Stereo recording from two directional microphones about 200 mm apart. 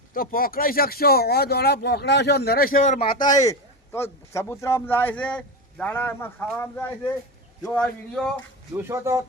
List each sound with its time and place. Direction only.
0.1 s speech: 45° left (ahead or behind)
3.2 s a man's voice: 15° left (ahead or behind)
8.7 s speech: 15° right (ahead or behind)